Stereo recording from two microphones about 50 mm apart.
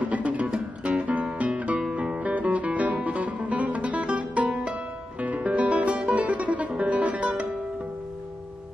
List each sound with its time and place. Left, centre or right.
0.0 s music: right